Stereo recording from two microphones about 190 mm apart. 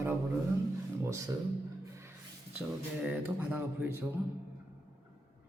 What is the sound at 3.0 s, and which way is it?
Speech, 5° right (ahead or behind).